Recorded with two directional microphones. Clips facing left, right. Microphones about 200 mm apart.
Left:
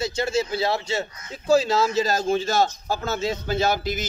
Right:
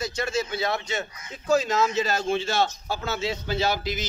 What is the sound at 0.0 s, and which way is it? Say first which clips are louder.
A man's voice: left 4 dB; 25° left (ahead or behind).